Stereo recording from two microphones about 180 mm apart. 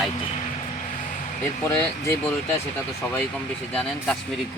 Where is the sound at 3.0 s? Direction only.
10° left (ahead or behind).